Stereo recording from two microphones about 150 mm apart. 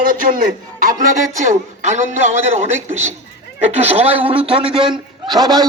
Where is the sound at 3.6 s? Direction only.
45° right (ahead or behind).